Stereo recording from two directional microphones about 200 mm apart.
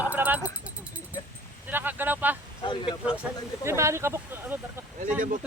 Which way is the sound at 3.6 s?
15° right (ahead or behind).